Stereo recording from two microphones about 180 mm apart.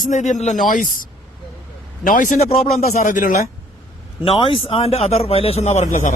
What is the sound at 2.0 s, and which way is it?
Speech, 45° left (ahead or behind).